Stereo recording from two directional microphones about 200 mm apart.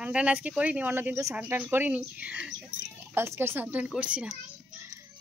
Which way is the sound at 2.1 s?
5° right (ahead or behind).